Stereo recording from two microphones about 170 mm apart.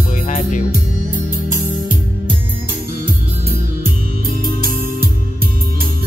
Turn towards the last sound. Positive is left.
turn(degrees=-60)  # may be behind; listen again after turning